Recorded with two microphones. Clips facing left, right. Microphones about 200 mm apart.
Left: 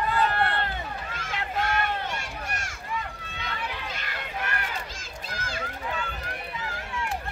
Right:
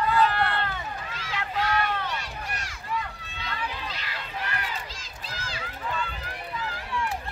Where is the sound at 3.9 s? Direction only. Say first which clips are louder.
Left 1 dB; 50° left (ahead or behind).